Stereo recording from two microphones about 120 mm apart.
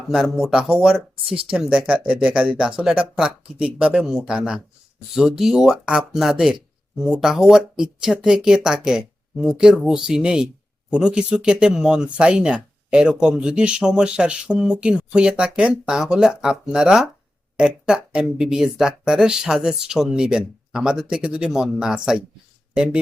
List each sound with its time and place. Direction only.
0.1 s speech: 5° right (ahead or behind)
1.1 s speech: 50° right (ahead or behind)
1.5 s speech: 10° right (ahead or behind)